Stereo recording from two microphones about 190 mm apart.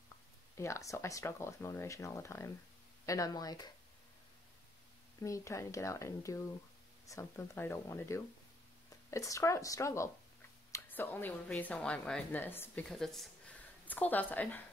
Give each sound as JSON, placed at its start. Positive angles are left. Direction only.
{"t": 0.6, "sound": "speech", "side_deg": 15}
{"t": 5.2, "sound": "speech", "side_deg": 15}